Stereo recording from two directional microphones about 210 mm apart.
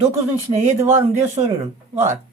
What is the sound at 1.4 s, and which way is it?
Speech, 25° right (ahead or behind).